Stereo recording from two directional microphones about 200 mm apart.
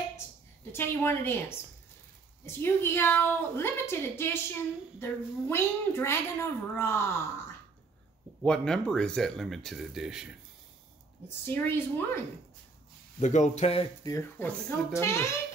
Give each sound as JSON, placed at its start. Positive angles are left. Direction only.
{"t": 0.7, "sound": "a woman's voice", "side_deg": 10}
{"t": 2.4, "sound": "a woman's voice", "side_deg": 10}
{"t": 8.4, "sound": "speech", "side_deg": 5}
{"t": 11.2, "sound": "a woman's voice", "side_deg": 10}
{"t": 13.2, "sound": "speech", "side_deg": 35}
{"t": 14.0, "sound": "a woman's voice", "side_deg": 15}